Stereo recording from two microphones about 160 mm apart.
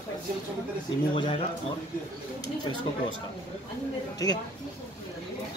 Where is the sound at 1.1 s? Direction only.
30° left (ahead or behind).